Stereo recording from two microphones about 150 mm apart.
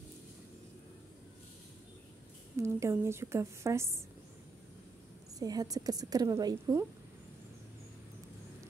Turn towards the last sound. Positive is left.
turn(degrees=-25)  # may be behind; listen again after turning